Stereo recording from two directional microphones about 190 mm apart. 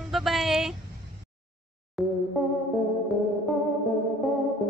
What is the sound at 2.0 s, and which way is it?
Music, centre (ahead or behind).